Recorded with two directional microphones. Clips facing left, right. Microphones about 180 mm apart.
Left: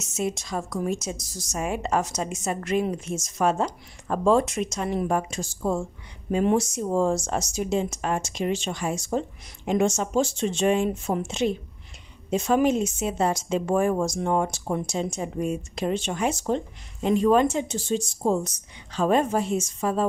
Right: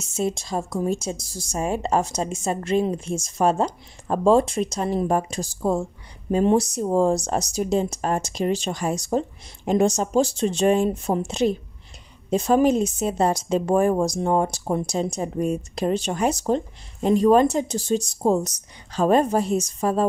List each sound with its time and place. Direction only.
0.0 s a woman's voice: 30° right (ahead or behind)